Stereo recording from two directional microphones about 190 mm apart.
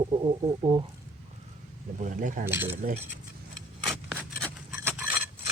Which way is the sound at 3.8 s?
Centre (ahead or behind).